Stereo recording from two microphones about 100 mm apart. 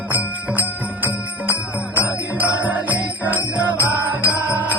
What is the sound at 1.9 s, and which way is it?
Music, 15° right (ahead or behind).